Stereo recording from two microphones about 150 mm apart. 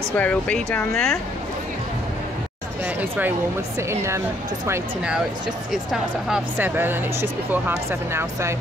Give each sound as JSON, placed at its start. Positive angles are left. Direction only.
{"t": 0.2, "sound": "speech", "side_deg": 10}
{"t": 2.8, "sound": "speech", "side_deg": -10}
{"t": 5.7, "sound": "speech", "side_deg": -5}
{"t": 6.7, "sound": "speech", "side_deg": -15}